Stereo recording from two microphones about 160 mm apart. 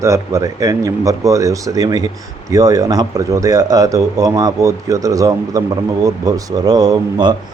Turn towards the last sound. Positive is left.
turn(degrees=-25)  # may be behind; listen again after turning